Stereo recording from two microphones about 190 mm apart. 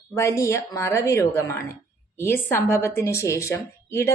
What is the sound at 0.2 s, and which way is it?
A woman's voice, 15° left (ahead or behind).